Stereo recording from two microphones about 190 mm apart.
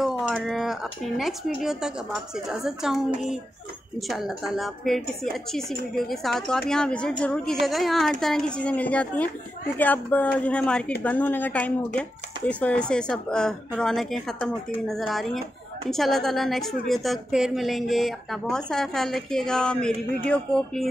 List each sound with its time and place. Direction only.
0.0 s speech: centre (ahead or behind)
4.1 s speech: centre (ahead or behind)